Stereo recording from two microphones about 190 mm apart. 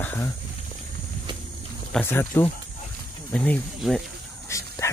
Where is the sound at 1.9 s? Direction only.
10° left (ahead or behind).